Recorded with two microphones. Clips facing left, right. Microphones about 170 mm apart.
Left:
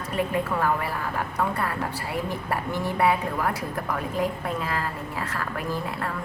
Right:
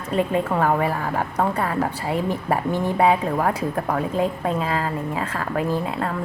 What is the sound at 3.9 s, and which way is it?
Speech, 25° right (ahead or behind).